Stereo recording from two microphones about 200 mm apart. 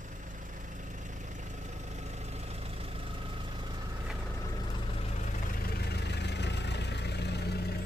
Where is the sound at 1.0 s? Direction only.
40° right (ahead or behind).